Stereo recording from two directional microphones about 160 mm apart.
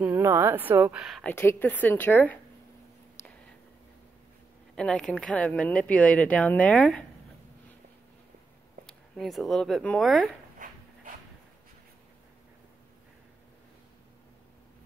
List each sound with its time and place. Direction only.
0.0 s speech: 15° right (ahead or behind)
1.2 s speech: 15° left (ahead or behind)
4.7 s speech: 5° left (ahead or behind)
8.8 s speech: centre (ahead or behind)
10.6 s dog: 55° right (ahead or behind)